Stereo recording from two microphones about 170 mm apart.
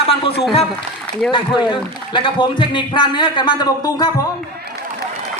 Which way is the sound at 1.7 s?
30° left (ahead or behind).